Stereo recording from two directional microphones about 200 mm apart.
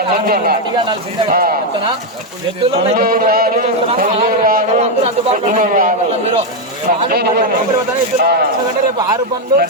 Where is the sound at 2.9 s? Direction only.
50° right (ahead or behind).